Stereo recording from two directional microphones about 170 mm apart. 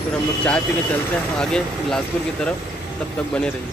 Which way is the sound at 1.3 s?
5° left (ahead or behind).